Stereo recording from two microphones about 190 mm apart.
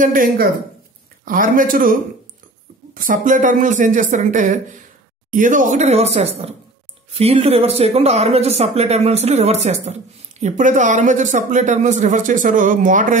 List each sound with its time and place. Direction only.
0.0 s a man's voice: 45° right (ahead or behind)